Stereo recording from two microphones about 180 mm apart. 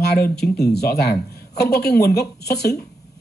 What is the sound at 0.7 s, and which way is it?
Speech, 65° left (ahead or behind).